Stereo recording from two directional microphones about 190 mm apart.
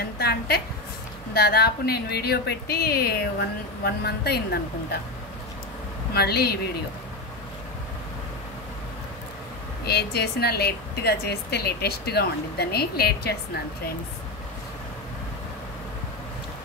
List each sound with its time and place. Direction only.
0.2 s a woman's voice: 60° left (ahead or behind)
6.1 s a woman's voice: 55° left (ahead or behind)
9.8 s a woman's voice: 60° left (ahead or behind)